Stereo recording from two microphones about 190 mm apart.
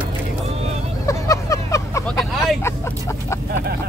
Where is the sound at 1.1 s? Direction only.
15° left (ahead or behind).